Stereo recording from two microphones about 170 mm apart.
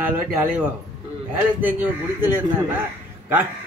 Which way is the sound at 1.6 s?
10° right (ahead or behind).